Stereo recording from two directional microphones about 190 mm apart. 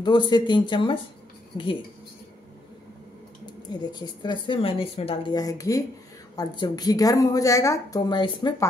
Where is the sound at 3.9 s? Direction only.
20° left (ahead or behind).